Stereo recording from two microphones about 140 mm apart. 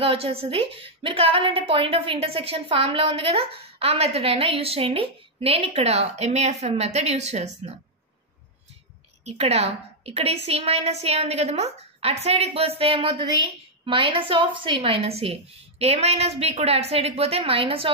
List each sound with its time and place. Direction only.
0.0 s a woman's voice: 45° right (ahead or behind)
9.2 s a woman's voice: 50° right (ahead or behind)